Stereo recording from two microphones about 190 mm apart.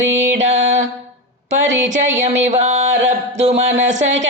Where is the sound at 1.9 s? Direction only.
40° right (ahead or behind).